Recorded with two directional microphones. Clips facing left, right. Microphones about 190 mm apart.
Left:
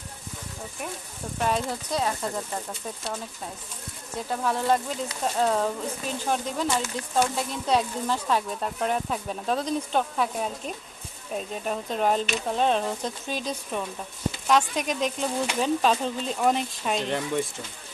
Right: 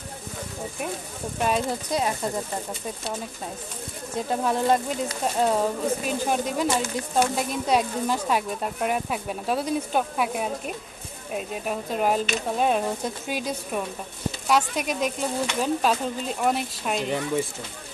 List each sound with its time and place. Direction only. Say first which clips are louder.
1.4 s speech: right 2 dB; 15° right (ahead or behind)
4.3 s speech: right 2 dB; 20° right (ahead or behind)